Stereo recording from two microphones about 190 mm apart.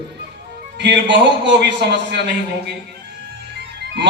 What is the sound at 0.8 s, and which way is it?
A man's voice, 65° right (ahead or behind).